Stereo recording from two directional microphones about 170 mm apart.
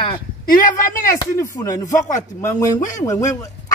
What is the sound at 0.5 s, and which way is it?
Speech, 50° left (ahead or behind).